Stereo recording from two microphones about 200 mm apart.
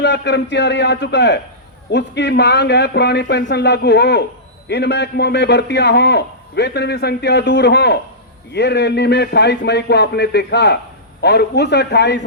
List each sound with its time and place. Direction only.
0.0 s a man's voice: 60° left (ahead or behind)